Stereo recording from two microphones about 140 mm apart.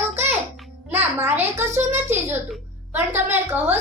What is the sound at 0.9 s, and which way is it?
A child's voice, 15° right (ahead or behind).